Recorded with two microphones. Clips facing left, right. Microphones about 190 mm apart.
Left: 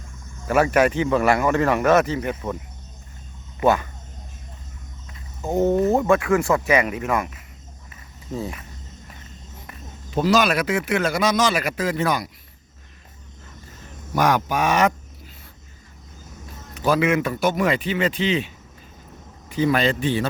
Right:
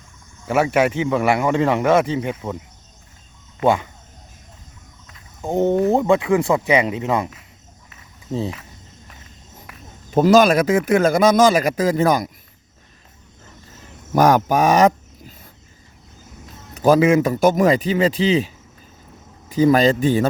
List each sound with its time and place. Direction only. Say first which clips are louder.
0.4 s a man's voice: even; 10° right (ahead or behind)
5.4 s a man's voice: right 1 dB; 15° right (ahead or behind)
10.1 s a man's voice: right 6 dB; 50° right (ahead or behind)
14.1 s speech: right 5 dB; 45° right (ahead or behind)
16.8 s speech: right 6 dB; 40° right (ahead or behind)